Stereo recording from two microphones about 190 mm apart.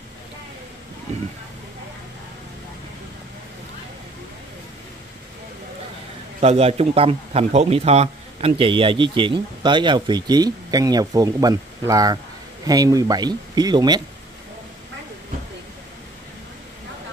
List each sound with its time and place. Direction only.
6.4 s a man's voice: 35° right (ahead or behind)